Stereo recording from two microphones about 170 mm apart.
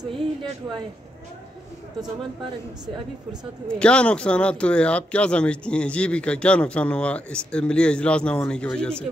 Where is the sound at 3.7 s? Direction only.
5° left (ahead or behind).